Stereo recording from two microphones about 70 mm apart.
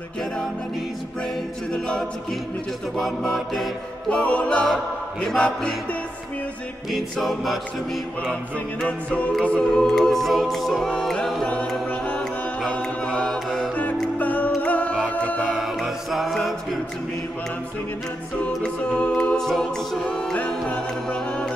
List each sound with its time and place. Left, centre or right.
1.7 s a capella: centre
3.0 s a capella: centre
4.1 s music: centre
5.2 s a capella: centre
6.9 s a capella: centre
8.8 s music: centre
9.4 s a capella: centre
12.6 s mantra: centre
13.7 s music: left
15.5 s music: centre
18.6 s a capella: centre